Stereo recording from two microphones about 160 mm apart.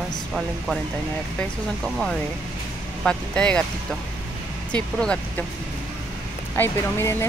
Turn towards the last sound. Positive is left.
turn(degrees=15)  # may be behind; listen again after turning